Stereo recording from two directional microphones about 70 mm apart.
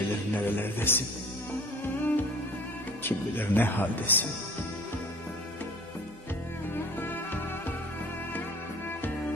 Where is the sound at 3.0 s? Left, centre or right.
Left.